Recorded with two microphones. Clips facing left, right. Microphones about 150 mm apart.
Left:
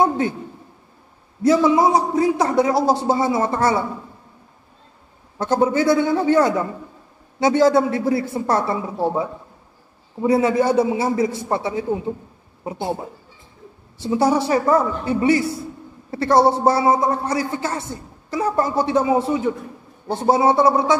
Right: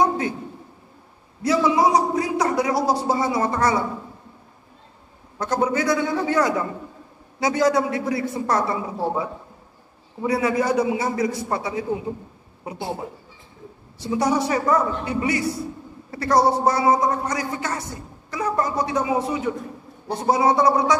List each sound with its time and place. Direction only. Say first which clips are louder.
1.4 s a man's voice: left 4 dB; 25° left (ahead or behind)
5.4 s a man's voice: left 4 dB; 30° left (ahead or behind)
10.2 s a man's voice: left 4 dB; 25° left (ahead or behind)
14.0 s a man's voice: left 3 dB; 25° left (ahead or behind)